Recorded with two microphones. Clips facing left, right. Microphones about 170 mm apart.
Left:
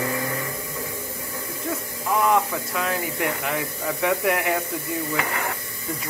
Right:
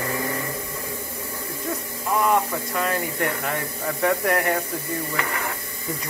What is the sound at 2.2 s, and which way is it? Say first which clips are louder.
Speech: even; centre (ahead or behind).